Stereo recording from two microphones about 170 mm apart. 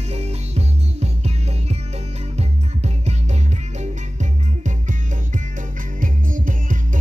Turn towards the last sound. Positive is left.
turn(degrees=-50)  # may be behind; listen again after turning